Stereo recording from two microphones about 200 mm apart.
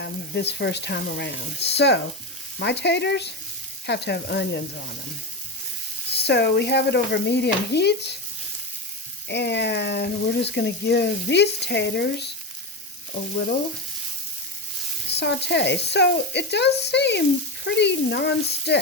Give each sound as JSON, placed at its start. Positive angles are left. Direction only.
{"t": 0.0, "sound": "speech", "side_deg": 60}
{"t": 6.2, "sound": "speech", "side_deg": 55}
{"t": 9.3, "sound": "speech", "side_deg": 60}
{"t": 15.2, "sound": "speech", "side_deg": 60}